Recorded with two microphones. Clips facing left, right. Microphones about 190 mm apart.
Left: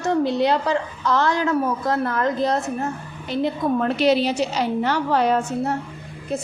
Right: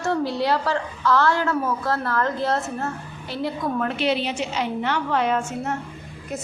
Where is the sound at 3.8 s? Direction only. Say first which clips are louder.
Left 6 dB; 40° left (ahead or behind).